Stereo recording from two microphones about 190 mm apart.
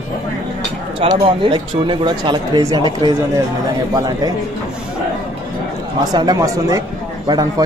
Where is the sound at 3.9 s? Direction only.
20° right (ahead or behind).